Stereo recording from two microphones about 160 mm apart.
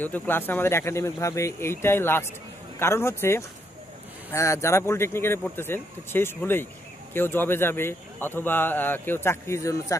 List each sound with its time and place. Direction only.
0.0 s a man's voice: 10° left (ahead or behind)